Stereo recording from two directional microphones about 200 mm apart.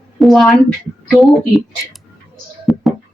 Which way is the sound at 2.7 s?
Centre (ahead or behind).